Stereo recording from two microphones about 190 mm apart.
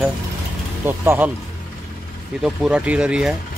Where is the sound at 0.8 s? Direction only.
10° right (ahead or behind).